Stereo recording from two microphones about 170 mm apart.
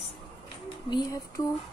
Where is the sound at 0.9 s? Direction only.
20° left (ahead or behind).